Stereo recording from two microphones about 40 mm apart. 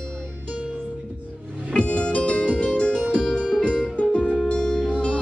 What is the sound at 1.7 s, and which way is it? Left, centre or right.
Music, left.